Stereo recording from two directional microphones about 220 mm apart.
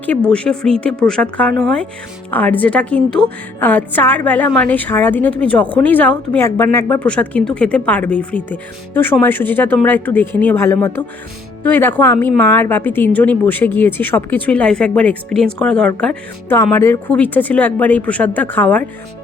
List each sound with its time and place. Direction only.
0.0 s a woman's voice: 5° left (ahead or behind)